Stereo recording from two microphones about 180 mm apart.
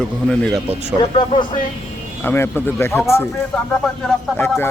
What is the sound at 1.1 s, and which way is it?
Speech, 30° left (ahead or behind).